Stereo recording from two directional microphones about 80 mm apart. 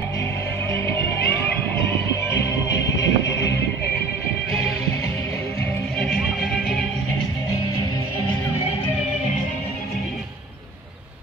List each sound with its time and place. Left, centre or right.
0.7 s music: left
2.8 s music: left
5.9 s music: centre